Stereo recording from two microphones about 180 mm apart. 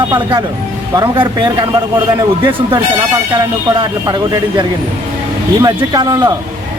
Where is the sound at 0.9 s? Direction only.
25° right (ahead or behind).